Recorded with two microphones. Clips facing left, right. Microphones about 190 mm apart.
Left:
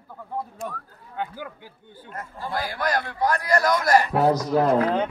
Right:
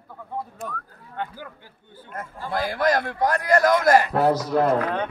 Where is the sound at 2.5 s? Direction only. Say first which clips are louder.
Right 4 dB; 50° right (ahead or behind).